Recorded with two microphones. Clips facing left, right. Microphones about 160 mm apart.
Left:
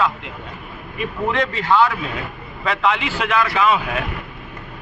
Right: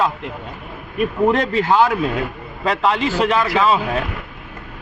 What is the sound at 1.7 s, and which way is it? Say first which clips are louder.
Speech: right 1 dB; 45° right (ahead or behind).